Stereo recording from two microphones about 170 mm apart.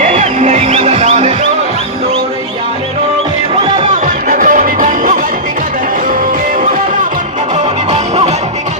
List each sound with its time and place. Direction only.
0.0 s music: 45° right (ahead or behind)
4.0 s music: 55° right (ahead or behind)